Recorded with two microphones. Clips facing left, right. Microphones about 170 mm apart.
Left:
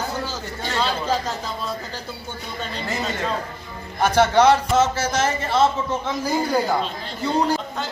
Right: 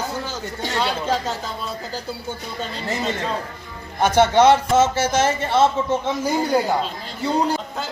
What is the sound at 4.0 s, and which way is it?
A man's voice, 20° right (ahead or behind).